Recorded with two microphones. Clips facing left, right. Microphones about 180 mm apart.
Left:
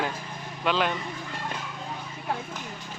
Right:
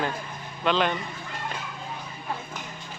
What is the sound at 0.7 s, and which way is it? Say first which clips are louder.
Speech: right 2 dB; 5° left (ahead or behind).